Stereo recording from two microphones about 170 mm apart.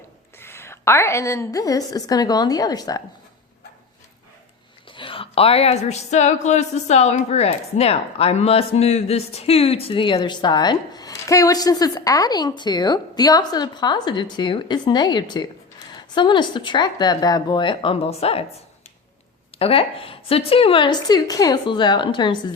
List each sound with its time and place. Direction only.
0.3 s a woman's voice: 15° left (ahead or behind)
4.9 s a woman's voice: 30° left (ahead or behind)
19.5 s a woman's voice: 35° left (ahead or behind)